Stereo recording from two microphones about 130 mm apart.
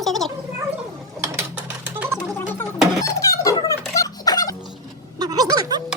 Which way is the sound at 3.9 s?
30° left (ahead or behind).